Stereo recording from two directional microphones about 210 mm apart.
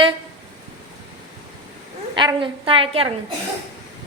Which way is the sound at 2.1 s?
20° right (ahead or behind).